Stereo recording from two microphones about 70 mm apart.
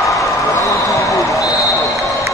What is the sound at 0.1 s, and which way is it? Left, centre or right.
Basketball bounce, left.